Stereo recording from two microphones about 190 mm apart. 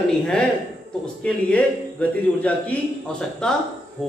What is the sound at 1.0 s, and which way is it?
A man's voice, 5° left (ahead or behind).